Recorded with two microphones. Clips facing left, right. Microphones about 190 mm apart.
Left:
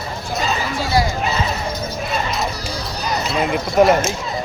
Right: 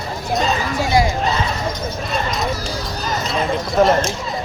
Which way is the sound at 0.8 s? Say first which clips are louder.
Right 2 dB; 25° right (ahead or behind).